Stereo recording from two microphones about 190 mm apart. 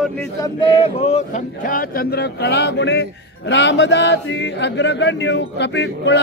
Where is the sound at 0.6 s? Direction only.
30° left (ahead or behind).